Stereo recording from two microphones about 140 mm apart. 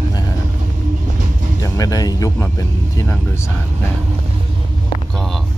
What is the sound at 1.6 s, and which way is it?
Speech, 25° left (ahead or behind).